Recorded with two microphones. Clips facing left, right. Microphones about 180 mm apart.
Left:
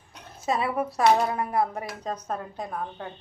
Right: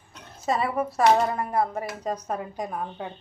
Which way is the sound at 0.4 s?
Centre (ahead or behind).